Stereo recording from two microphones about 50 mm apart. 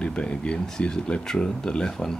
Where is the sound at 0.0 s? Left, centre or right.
Left.